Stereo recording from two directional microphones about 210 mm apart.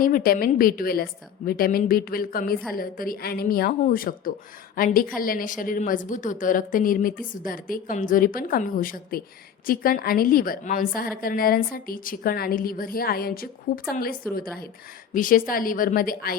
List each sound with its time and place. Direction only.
0.0 s a woman's voice: 40° left (ahead or behind)